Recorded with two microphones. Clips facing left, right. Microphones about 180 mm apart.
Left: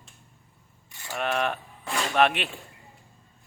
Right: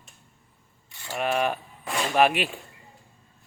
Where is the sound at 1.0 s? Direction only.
5° right (ahead or behind).